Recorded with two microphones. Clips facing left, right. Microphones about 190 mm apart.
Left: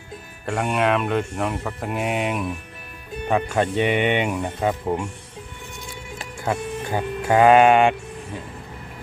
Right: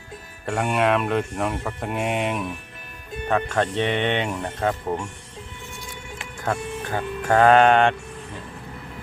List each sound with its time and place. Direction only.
0.4 s speech: centre (ahead or behind)
6.3 s speech: 10° left (ahead or behind)